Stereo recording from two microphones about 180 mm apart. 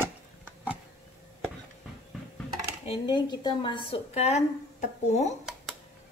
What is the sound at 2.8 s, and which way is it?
A woman's voice, 25° left (ahead or behind).